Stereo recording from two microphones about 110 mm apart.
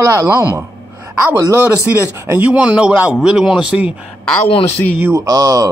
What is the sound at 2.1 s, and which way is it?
Speech, 25° right (ahead or behind).